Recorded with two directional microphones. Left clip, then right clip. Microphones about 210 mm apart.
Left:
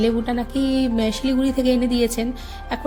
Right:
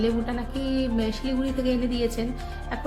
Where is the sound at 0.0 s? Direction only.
35° left (ahead or behind).